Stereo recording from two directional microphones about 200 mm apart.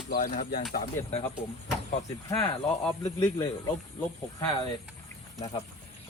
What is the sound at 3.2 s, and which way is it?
Speech, 20° left (ahead or behind).